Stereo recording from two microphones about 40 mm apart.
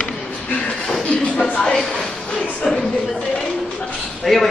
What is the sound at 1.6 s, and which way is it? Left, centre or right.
Speech, centre.